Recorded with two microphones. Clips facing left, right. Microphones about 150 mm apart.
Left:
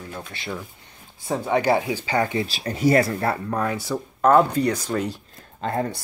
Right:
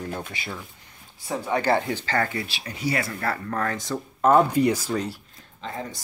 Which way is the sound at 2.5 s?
40° left (ahead or behind).